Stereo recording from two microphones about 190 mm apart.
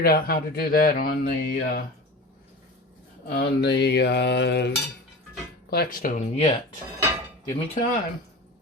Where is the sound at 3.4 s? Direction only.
60° left (ahead or behind).